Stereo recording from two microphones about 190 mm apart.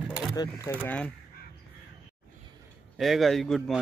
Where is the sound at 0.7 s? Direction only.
10° left (ahead or behind).